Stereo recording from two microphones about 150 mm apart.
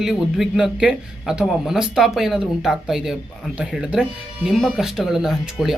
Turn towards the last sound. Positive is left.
turn(degrees=0)  # may be behind; listen again after turning